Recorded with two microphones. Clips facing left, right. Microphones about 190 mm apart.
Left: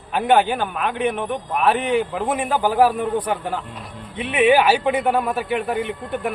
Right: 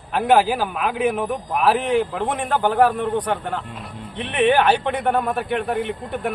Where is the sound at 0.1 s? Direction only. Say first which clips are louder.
Even; centre (ahead or behind).